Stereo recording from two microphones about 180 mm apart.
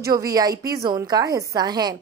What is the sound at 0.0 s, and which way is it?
A woman's voice, 20° right (ahead or behind).